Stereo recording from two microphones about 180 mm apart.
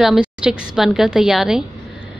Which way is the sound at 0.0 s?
5° right (ahead or behind).